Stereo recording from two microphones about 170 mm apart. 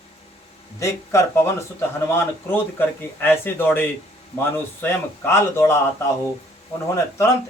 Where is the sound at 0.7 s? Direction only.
15° left (ahead or behind).